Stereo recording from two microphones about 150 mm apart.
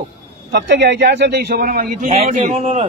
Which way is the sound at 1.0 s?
90° right.